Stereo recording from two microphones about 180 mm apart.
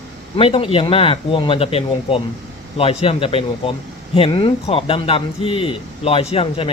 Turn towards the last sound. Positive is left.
turn(degrees=30)  # may be behind; listen again after turning